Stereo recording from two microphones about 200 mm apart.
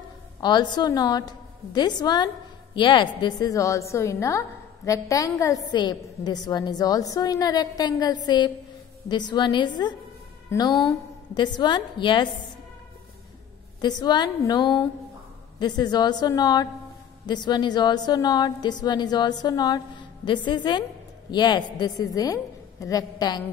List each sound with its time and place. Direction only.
0.4 s a woman's voice: 20° left (ahead or behind)
13.7 s a woman's voice: 20° left (ahead or behind)